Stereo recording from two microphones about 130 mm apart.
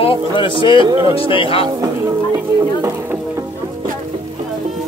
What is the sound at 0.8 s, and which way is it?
Speech, 25° right (ahead or behind).